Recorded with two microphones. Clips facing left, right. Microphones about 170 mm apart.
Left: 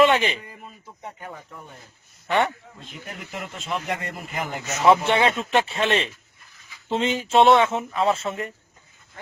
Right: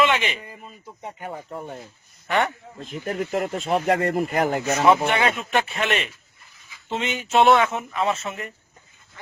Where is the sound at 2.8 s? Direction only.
45° right (ahead or behind).